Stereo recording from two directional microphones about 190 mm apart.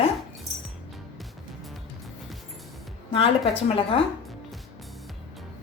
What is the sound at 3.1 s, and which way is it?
Speech, 30° left (ahead or behind).